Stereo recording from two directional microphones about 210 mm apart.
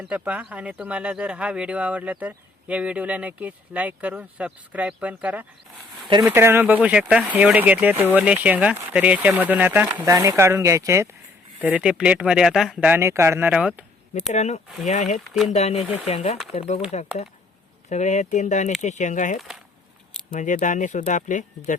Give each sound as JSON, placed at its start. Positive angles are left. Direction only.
{"t": 0.0, "sound": "speech", "side_deg": -5}
{"t": 6.1, "sound": "speech", "side_deg": -20}
{"t": 6.3, "sound": "speech", "side_deg": -10}
{"t": 14.1, "sound": "speech", "side_deg": 35}
{"t": 15.2, "sound": "speech", "side_deg": 0}
{"t": 15.5, "sound": "speech", "side_deg": 30}
{"t": 17.8, "sound": "speech", "side_deg": 35}